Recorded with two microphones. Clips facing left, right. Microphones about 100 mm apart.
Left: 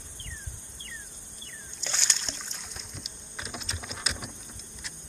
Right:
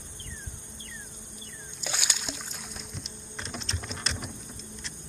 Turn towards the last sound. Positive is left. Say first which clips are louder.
# right 1 dB
turn(degrees=5)  # may be behind; listen again after turning